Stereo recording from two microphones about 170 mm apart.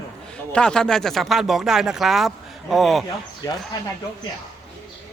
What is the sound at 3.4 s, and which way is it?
Speech, 20° left (ahead or behind).